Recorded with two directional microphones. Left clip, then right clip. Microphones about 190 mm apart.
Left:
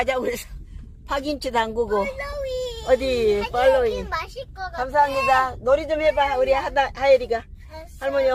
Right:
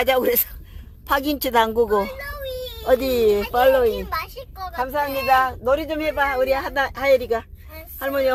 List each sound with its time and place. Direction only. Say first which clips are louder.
0.0 s a man's voice: right 4 dB; 45° right (ahead or behind)
4.1 s a child's voice: right 1 dB; 10° right (ahead or behind); by 8.3 s 40° right (ahead or behind)